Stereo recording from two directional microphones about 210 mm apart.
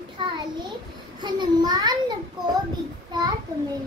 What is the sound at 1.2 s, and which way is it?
Speech, 20° right (ahead or behind).